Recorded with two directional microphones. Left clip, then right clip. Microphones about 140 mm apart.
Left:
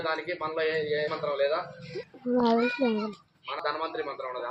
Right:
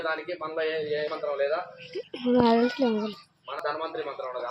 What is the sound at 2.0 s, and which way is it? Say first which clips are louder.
Speech: right 4 dB; 20° right (ahead or behind).